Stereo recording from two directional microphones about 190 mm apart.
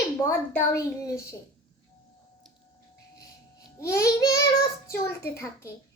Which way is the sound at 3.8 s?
15° left (ahead or behind).